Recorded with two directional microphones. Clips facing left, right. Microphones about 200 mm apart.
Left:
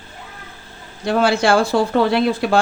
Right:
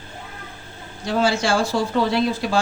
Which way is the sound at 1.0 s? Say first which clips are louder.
Left 4 dB; 60° left (ahead or behind).